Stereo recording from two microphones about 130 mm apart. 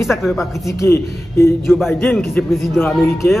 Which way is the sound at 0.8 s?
20° left (ahead or behind).